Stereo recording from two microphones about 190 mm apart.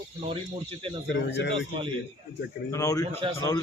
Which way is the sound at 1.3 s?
70° left (ahead or behind).